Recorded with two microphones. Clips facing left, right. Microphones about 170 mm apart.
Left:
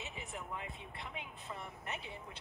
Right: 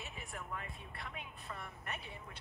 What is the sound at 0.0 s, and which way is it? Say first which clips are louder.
A woman's voice: left 2 dB; 20° left (ahead or behind).